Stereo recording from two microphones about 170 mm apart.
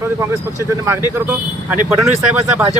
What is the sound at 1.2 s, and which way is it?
Speech, 10° right (ahead or behind).